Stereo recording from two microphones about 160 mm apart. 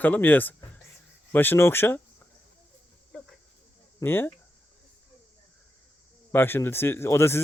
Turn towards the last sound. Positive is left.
turn(degrees=15)  # may be behind; listen again after turning